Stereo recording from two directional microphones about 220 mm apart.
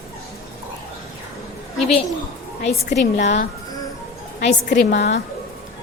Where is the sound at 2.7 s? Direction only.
45° left (ahead or behind).